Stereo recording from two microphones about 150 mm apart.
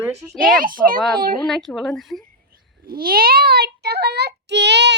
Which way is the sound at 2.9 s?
80° right.